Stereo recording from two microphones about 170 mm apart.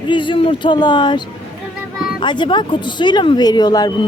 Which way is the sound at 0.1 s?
30° left (ahead or behind).